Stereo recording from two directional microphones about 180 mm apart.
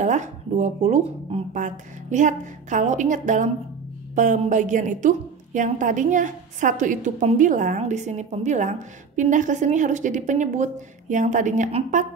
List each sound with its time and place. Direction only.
0.0 s a woman's voice: 40° right (ahead or behind)